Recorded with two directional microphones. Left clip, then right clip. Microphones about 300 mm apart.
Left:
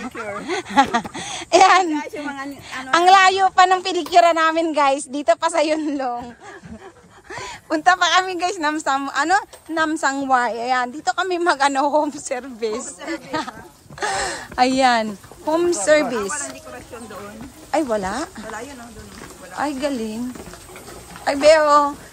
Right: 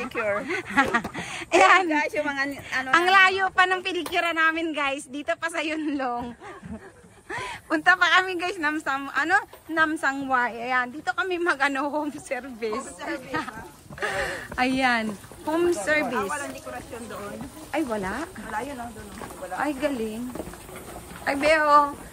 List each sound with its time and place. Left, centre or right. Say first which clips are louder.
0.0 s a sound: right 3 dB; centre
0.5 s a woman's voice: left 10 dB; centre
16.2 s speech: left 2 dB; centre
17.6 s a woman's voice: left 7 dB; centre
19.5 s a woman's voice: left 3 dB; centre
21.3 s a woman's voice: left 6 dB; centre